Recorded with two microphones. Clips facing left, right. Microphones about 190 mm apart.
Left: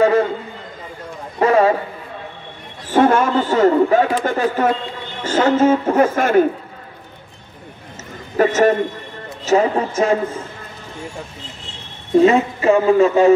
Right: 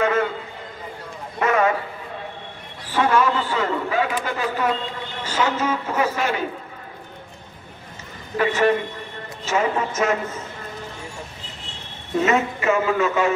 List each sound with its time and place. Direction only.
0.0 s a man's voice: 30° left (ahead or behind)
1.4 s a man's voice: 30° left (ahead or behind)
2.9 s a man's voice: 45° left (ahead or behind)
8.4 s a man's voice: 40° left (ahead or behind)
12.2 s a man's voice: 30° left (ahead or behind)